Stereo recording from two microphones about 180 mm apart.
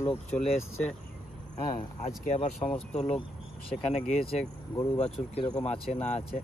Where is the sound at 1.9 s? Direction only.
40° left (ahead or behind).